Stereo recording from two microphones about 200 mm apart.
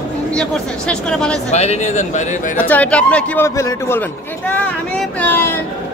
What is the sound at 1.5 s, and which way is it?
Speech, 35° left (ahead or behind).